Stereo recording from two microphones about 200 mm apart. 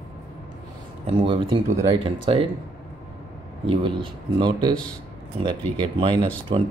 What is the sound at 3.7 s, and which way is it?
Speech, 25° right (ahead or behind).